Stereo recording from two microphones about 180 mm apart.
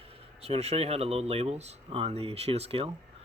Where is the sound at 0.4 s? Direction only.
35° right (ahead or behind).